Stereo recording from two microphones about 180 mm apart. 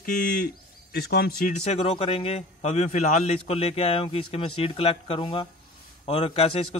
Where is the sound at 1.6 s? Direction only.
35° left (ahead or behind).